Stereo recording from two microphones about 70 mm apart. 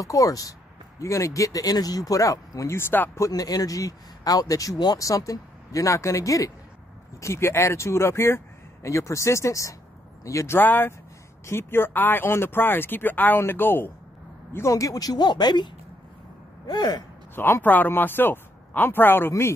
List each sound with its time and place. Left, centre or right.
0.0 s speech: left
2.7 s speech: left
3.2 s speech: left
10.6 s speech: left
14.7 s speech: left
17.4 s speech: left